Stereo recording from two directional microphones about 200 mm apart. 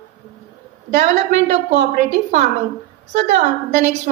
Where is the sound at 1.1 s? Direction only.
35° right (ahead or behind).